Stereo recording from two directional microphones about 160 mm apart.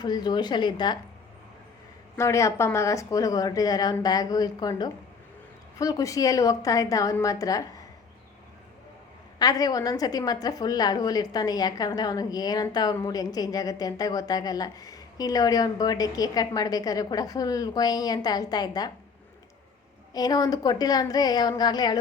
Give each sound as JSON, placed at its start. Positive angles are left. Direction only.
{"t": 0.0, "sound": "a woman's voice", "side_deg": 25}
{"t": 2.1, "sound": "a woman's voice", "side_deg": 20}
{"t": 9.4, "sound": "a woman's voice", "side_deg": 25}
{"t": 20.1, "sound": "a woman's voice", "side_deg": 25}